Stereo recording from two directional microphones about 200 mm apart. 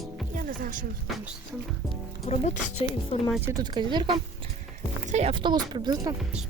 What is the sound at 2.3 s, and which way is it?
Speech, 30° left (ahead or behind).